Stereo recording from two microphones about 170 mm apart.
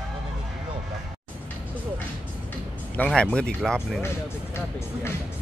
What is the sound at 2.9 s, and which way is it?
Speech, 5° left (ahead or behind).